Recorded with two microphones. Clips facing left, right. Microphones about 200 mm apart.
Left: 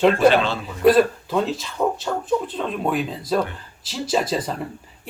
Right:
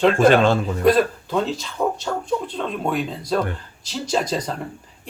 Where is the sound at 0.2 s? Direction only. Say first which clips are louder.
Right 2 dB; 50° right (ahead or behind).